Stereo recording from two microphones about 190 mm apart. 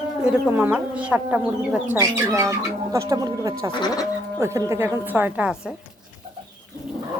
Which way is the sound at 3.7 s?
25° left (ahead or behind).